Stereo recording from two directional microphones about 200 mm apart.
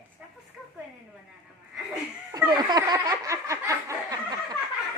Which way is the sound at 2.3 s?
20° right (ahead or behind).